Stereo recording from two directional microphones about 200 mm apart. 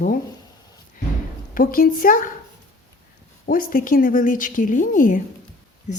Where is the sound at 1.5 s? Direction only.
45° left (ahead or behind).